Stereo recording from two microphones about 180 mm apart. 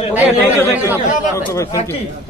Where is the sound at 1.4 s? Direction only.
10° left (ahead or behind).